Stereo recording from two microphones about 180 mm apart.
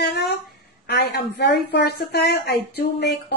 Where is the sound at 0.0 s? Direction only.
65° left (ahead or behind).